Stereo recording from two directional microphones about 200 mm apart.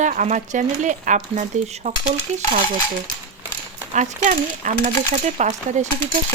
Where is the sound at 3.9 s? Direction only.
35° right (ahead or behind).